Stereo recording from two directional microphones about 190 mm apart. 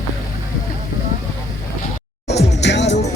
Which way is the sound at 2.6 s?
65° left (ahead or behind).